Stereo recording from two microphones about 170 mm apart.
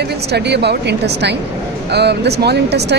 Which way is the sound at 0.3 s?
80° right.